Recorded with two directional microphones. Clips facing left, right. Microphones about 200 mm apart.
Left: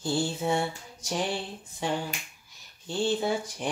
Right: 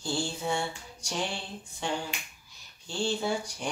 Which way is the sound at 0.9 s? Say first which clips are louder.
Left 4 dB; 5° left (ahead or behind).